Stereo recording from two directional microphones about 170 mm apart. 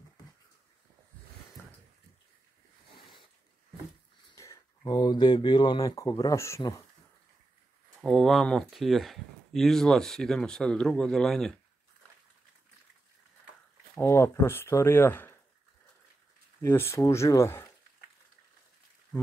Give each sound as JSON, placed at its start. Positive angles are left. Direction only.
{"t": 4.3, "sound": "speech", "side_deg": 20}
{"t": 8.0, "sound": "speech", "side_deg": 0}
{"t": 13.9, "sound": "speech", "side_deg": 15}
{"t": 16.6, "sound": "speech", "side_deg": 15}